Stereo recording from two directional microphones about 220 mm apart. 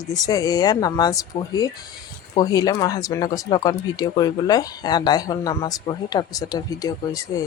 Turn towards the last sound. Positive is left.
turn(degrees=15)  # may be behind; listen again after turning